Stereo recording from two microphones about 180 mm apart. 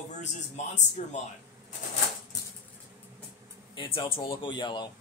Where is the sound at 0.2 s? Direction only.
40° left (ahead or behind).